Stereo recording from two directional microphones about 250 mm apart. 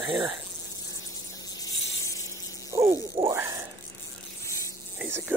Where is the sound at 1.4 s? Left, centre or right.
Centre.